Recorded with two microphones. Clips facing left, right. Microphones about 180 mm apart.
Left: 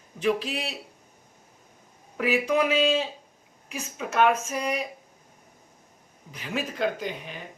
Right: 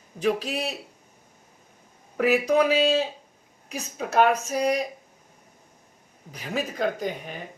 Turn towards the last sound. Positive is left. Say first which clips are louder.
# right 3 dB
turn(degrees=-45)  # may be behind; listen again after turning